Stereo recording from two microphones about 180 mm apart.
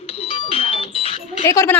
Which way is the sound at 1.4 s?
15° left (ahead or behind).